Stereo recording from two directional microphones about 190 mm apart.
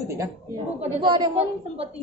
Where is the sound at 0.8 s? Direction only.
25° right (ahead or behind).